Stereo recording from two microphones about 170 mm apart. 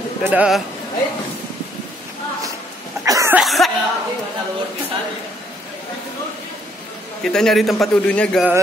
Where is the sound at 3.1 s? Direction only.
20° right (ahead or behind).